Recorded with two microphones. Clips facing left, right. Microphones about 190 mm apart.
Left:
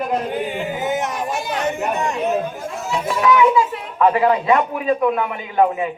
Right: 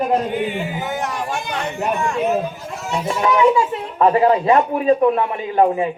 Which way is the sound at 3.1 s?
35° right (ahead or behind).